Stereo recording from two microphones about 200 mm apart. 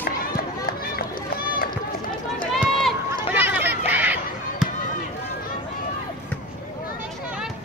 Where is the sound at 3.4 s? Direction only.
10° right (ahead or behind).